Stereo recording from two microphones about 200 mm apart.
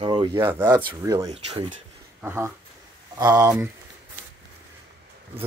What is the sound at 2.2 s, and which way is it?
Speech, 10° right (ahead or behind).